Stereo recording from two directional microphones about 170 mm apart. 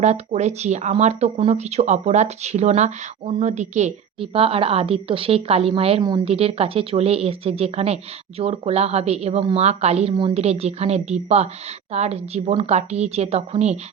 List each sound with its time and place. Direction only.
0.0 s speech: 40° right (ahead or behind)
6.0 s a woman's voice: 20° right (ahead or behind)
6.2 s speech: 35° right (ahead or behind)